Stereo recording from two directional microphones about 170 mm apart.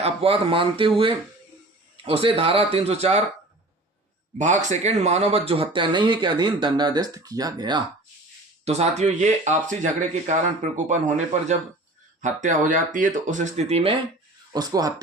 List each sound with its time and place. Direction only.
0.0 s speech: 35° right (ahead or behind)
4.4 s speech: 45° right (ahead or behind); by 7.8 s 25° right (ahead or behind)
8.6 s speech: 40° right (ahead or behind)
14.5 s speech: 20° right (ahead or behind)